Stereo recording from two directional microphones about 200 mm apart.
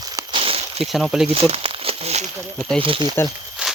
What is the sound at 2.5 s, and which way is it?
Speech, centre (ahead or behind).